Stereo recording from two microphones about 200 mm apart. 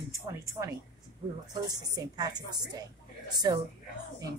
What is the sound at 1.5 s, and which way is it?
A woman's voice, 20° right (ahead or behind).